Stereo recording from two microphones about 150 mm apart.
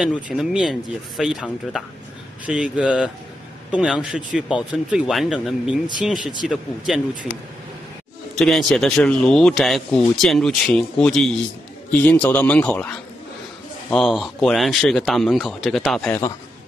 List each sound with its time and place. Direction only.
0.0 s speech: 5° right (ahead or behind)
2.4 s speech: 5° right (ahead or behind)
8.4 s a man's voice: 5° left (ahead or behind)
16.1 s a man's voice: 25° left (ahead or behind)